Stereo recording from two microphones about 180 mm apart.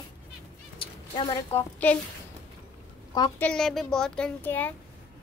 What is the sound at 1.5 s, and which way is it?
Speech, 10° left (ahead or behind).